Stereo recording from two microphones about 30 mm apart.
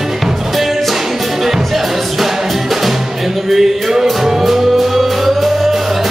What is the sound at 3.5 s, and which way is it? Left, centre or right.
Music, centre.